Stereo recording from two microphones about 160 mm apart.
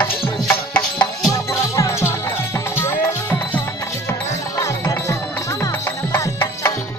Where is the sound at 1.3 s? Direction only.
20° left (ahead or behind).